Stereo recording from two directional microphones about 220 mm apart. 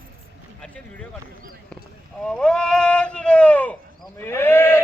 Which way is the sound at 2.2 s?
5° left (ahead or behind).